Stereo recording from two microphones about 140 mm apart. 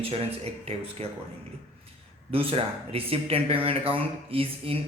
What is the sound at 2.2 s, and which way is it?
Speech, 45° right (ahead or behind).